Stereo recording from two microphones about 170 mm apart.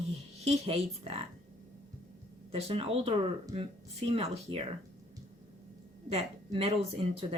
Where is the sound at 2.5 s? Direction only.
35° right (ahead or behind).